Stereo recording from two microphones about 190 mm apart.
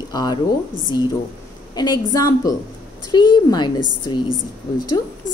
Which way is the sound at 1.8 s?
20° left (ahead or behind).